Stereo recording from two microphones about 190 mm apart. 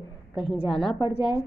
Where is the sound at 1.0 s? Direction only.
25° left (ahead or behind).